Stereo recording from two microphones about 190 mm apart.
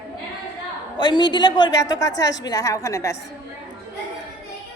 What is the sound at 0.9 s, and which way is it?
A woman's voice, 20° left (ahead or behind).